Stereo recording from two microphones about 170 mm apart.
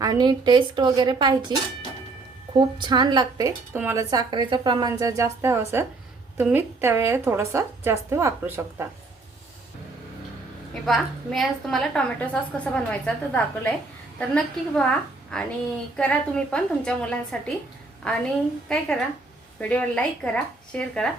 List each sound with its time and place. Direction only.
0.0 s a woman's voice: 25° right (ahead or behind)
2.6 s a woman's voice: 25° right (ahead or behind)
10.8 s a woman's voice: centre (ahead or behind)
19.5 s speech: 5° left (ahead or behind)